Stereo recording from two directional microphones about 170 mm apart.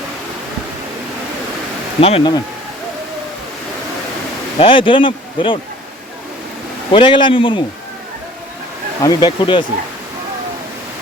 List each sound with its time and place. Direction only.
2.0 s speech: 35° left (ahead or behind)
4.6 s speech: 30° left (ahead or behind)
6.9 s a man's voice: 30° left (ahead or behind)
9.0 s a man's voice: 25° left (ahead or behind)